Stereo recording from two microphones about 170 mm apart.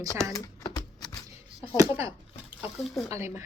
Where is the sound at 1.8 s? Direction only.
20° right (ahead or behind).